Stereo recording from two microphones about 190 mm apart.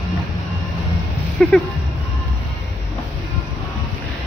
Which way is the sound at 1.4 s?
Centre (ahead or behind).